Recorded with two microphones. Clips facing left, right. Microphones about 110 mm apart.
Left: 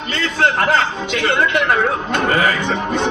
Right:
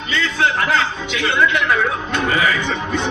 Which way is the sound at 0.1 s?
50° left (ahead or behind).